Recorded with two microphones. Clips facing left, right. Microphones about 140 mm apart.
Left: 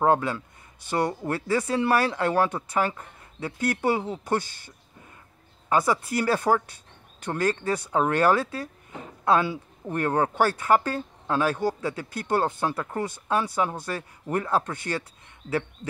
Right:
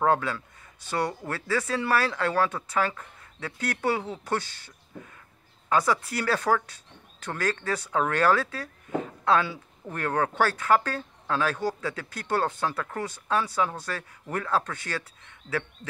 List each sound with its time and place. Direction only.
0.0 s speech: 15° left (ahead or behind)